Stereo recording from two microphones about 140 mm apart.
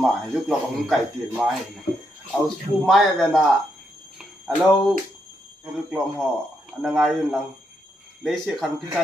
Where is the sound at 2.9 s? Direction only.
5° left (ahead or behind).